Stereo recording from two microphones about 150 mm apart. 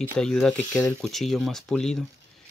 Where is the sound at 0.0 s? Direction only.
5° left (ahead or behind).